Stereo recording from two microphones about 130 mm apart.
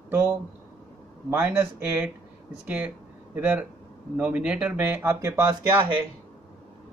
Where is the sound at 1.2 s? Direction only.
15° right (ahead or behind).